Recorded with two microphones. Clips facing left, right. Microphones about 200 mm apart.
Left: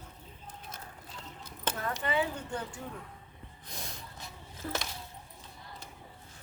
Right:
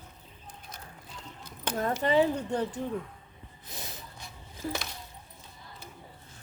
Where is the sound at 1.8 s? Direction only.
35° right (ahead or behind).